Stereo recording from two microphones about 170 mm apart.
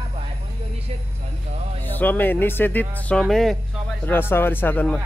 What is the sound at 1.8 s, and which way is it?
Speech, 10° left (ahead or behind).